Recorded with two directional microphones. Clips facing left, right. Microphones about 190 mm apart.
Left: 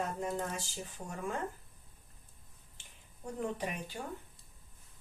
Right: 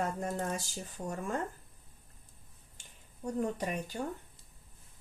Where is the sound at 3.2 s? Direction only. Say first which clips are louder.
Right 4 dB; 40° right (ahead or behind).